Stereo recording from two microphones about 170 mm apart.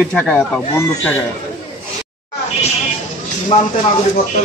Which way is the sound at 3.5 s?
40° left (ahead or behind).